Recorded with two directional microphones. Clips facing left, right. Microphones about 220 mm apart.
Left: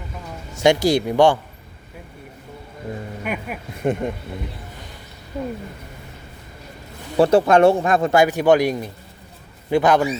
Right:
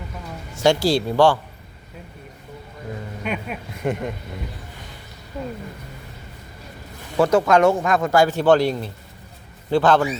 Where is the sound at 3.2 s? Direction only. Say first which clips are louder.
Right 1 dB; 5° left (ahead or behind).